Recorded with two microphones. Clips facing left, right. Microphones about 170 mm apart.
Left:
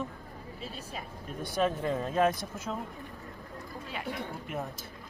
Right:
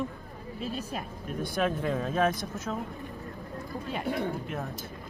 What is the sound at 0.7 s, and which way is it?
Speech, 70° right (ahead or behind).